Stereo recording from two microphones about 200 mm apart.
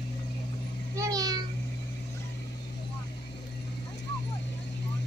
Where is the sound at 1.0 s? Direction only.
15° right (ahead or behind).